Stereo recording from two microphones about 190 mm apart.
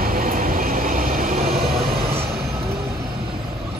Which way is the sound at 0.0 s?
50° right (ahead or behind).